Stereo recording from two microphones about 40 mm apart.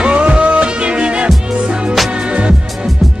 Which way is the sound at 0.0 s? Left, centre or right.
Right.